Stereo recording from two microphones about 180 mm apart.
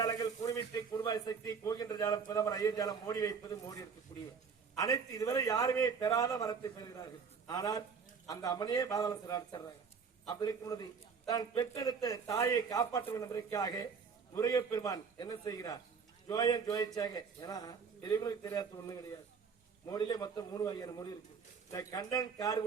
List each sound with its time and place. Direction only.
0.0 s a man's voice: 20° left (ahead or behind)